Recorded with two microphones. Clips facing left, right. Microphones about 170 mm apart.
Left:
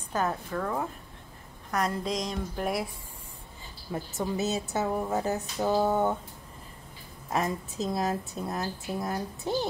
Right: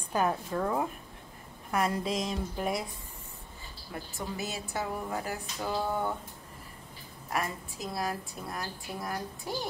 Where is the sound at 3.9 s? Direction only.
20° left (ahead or behind).